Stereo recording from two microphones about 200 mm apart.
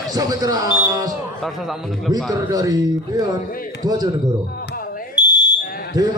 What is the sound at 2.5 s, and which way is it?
A man's voice, 15° right (ahead or behind).